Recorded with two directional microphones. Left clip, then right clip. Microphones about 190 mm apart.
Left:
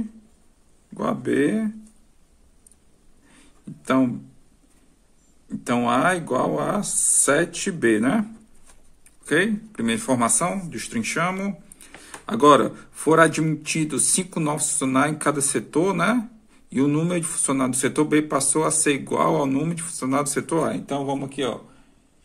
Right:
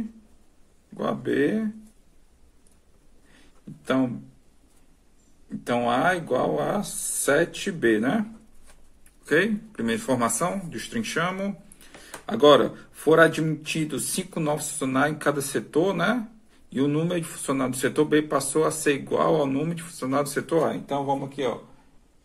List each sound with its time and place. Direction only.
0.9 s speech: 30° left (ahead or behind)
3.3 s a sound: 30° left (ahead or behind)
5.5 s speech: 30° left (ahead or behind)